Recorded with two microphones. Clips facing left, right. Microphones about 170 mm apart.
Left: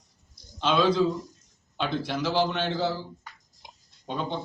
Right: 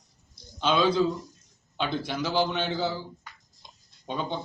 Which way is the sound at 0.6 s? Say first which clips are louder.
Left 1 dB; centre (ahead or behind).